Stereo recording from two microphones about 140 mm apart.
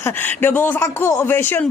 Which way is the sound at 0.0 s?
15° left (ahead or behind).